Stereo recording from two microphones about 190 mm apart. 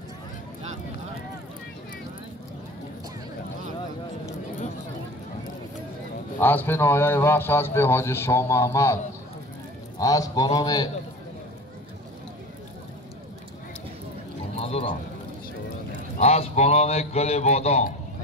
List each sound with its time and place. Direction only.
6.4 s a man's voice: 10° left (ahead or behind)
14.6 s vehicle: 30° left (ahead or behind)
16.2 s a man's voice: 35° left (ahead or behind)